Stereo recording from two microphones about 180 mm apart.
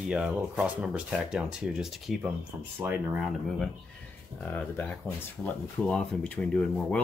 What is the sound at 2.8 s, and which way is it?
Speech, 10° right (ahead or behind).